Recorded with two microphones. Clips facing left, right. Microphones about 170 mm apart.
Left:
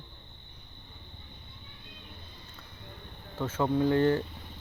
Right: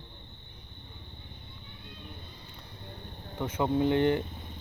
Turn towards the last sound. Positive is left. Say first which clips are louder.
# even
turn(degrees=-20)  # may be behind; listen again after turning